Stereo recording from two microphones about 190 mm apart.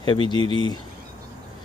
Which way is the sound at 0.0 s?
25° left (ahead or behind).